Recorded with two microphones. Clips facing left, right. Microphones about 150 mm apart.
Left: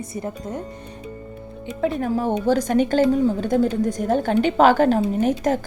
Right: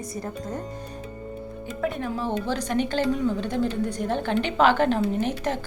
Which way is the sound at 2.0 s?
45° left (ahead or behind).